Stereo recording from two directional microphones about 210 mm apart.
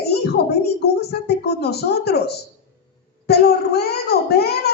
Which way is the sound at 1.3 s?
50° left (ahead or behind).